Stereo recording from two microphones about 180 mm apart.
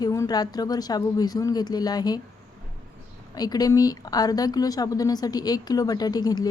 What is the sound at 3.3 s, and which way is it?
A woman's voice, 20° left (ahead or behind).